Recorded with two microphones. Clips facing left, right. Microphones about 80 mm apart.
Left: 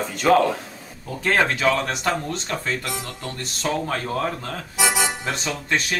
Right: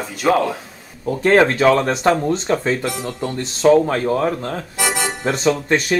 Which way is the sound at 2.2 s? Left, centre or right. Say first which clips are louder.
Right 9 dB; right.